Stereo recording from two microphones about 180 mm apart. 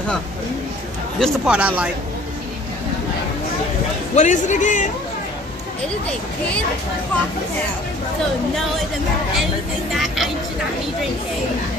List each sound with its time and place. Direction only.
1.2 s speech: 5° right (ahead or behind)
4.1 s a man's voice: 40° left (ahead or behind)
9.9 s vehicle: centre (ahead or behind)